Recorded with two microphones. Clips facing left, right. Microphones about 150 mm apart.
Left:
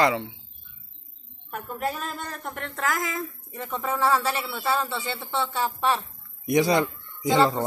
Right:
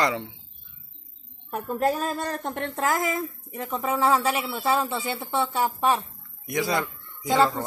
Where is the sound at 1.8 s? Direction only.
40° right (ahead or behind).